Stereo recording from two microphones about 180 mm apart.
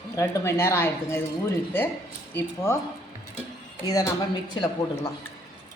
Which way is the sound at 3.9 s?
20° left (ahead or behind).